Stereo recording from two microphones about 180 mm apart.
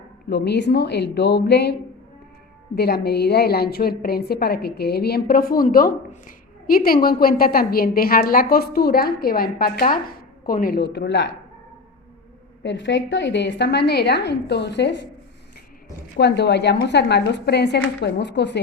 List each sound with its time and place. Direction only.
0.3 s speech: 70° left (ahead or behind)
2.7 s a woman's voice: 65° left (ahead or behind)
12.6 s speech: 85° left; by 15.0 s 70° left (ahead or behind)
16.1 s speech: 70° left (ahead or behind)